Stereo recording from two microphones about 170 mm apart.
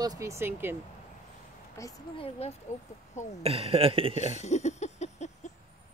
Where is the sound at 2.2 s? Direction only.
40° left (ahead or behind).